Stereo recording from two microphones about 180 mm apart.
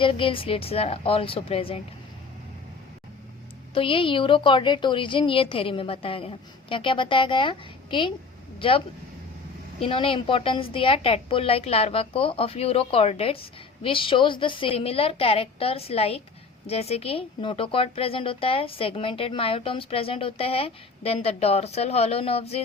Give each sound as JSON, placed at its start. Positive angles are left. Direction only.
{"t": 0.0, "sound": "speech", "side_deg": 30}
{"t": 3.8, "sound": "a woman's voice", "side_deg": 30}
{"t": 9.8, "sound": "speech", "side_deg": 30}